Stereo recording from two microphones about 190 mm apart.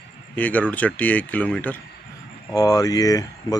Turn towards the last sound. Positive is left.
turn(degrees=20)  # may be behind; listen again after turning